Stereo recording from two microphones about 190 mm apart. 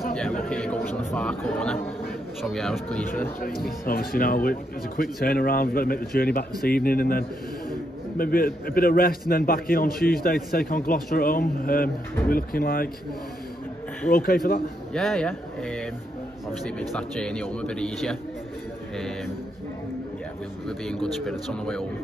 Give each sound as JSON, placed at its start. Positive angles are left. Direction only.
{"t": 0.5, "sound": "a man's voice", "side_deg": 5}
{"t": 3.3, "sound": "speech", "side_deg": 50}
{"t": 14.1, "sound": "speech", "side_deg": 55}
{"t": 15.0, "sound": "a man's voice", "side_deg": 5}
{"t": 20.6, "sound": "a man's voice", "side_deg": 5}